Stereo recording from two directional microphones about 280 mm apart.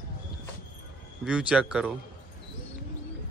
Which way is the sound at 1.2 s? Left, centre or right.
Centre.